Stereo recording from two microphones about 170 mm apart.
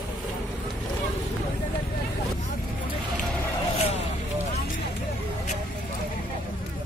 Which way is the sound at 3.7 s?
35° left (ahead or behind).